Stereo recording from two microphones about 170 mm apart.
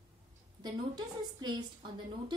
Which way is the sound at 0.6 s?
25° right (ahead or behind).